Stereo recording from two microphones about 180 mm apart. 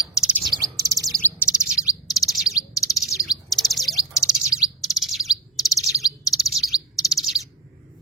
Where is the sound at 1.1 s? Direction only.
10° left (ahead or behind).